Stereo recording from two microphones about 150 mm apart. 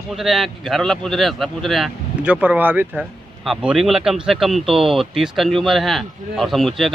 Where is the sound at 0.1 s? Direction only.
Centre (ahead or behind).